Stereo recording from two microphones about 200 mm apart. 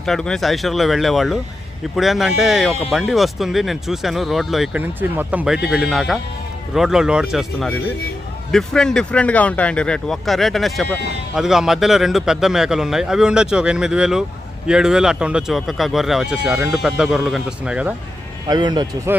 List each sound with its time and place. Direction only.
0.0 s a man's voice: 5° left (ahead or behind)
18.4 s speech: 20° right (ahead or behind)